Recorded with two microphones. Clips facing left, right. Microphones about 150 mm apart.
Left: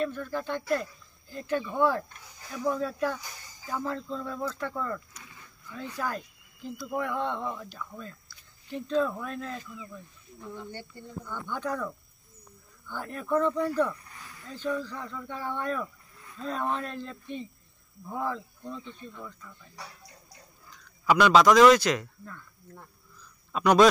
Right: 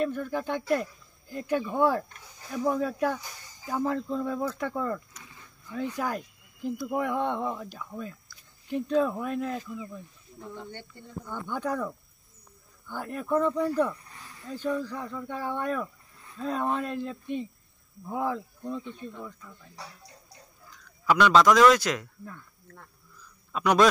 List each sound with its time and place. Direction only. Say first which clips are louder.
0.2 s speech: right 2 dB; 15° right (ahead or behind)
11.0 s speech: right 3 dB; 15° right (ahead or behind)
20.6 s speech: even; 5° left (ahead or behind)
23.5 s a man's voice: left 2 dB; centre (ahead or behind)